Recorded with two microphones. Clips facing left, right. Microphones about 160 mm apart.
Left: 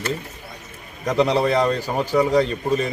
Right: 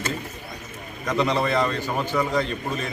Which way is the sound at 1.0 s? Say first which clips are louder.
Left 4 dB; 35° left (ahead or behind).